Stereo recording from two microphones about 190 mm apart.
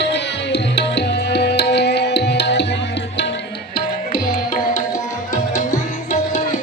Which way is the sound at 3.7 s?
45° left (ahead or behind).